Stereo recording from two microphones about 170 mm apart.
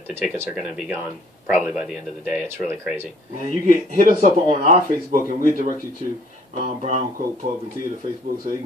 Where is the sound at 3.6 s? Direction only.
55° right (ahead or behind).